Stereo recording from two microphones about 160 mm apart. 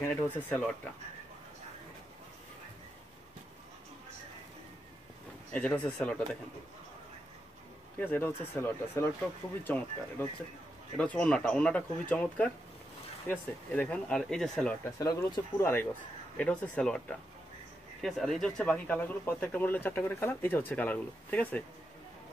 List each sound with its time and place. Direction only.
0.0 s speech: 10° left (ahead or behind)
5.5 s speech: 10° left (ahead or behind)
8.0 s speech: 10° left (ahead or behind)
15.0 s speech: 20° left (ahead or behind)
18.0 s speech: 5° left (ahead or behind)